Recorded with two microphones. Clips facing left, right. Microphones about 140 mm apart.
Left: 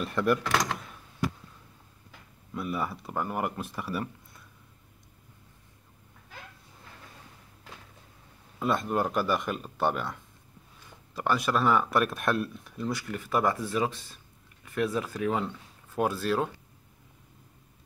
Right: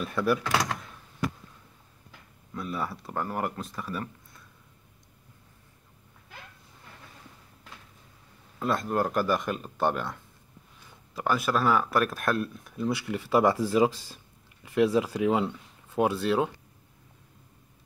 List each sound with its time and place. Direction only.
0.0 s speech: 5° right (ahead or behind)
2.5 s speech: 5° left (ahead or behind)
8.5 s speech: centre (ahead or behind)
11.1 s speech: 5° right (ahead or behind)
13.3 s speech: 25° right (ahead or behind)
13.8 s a sound: 30° right (ahead or behind)
15.1 s speech: 15° right (ahead or behind)